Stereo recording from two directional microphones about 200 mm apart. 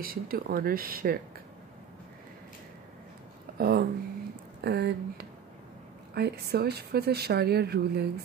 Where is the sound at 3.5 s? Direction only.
50° right (ahead or behind).